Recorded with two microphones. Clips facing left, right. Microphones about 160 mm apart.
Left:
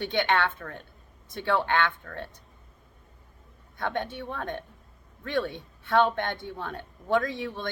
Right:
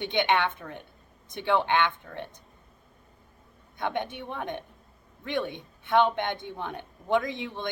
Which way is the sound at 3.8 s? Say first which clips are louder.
Even; 20° right (ahead or behind).